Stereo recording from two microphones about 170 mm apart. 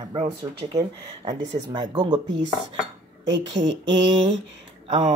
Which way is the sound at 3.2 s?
90° right.